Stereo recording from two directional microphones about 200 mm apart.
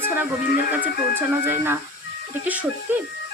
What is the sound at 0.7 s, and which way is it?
Speech, 10° right (ahead or behind).